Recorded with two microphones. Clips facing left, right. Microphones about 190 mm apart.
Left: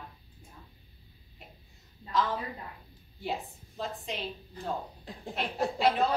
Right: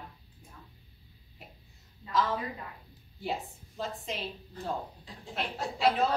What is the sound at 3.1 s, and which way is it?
A woman's voice, centre (ahead or behind).